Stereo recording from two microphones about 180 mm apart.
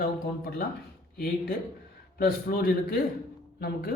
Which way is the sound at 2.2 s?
55° left (ahead or behind).